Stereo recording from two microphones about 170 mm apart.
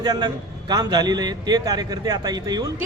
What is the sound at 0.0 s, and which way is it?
A man's voice, 25° right (ahead or behind).